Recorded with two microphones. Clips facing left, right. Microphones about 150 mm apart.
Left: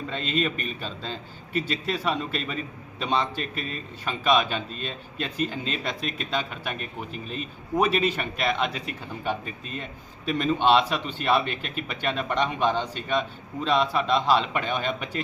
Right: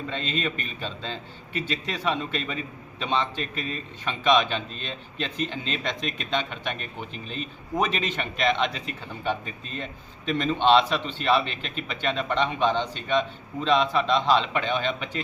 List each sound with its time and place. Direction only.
0.1 s a man's voice: 5° left (ahead or behind)